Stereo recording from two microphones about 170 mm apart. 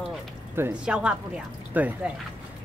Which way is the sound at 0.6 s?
10° right (ahead or behind).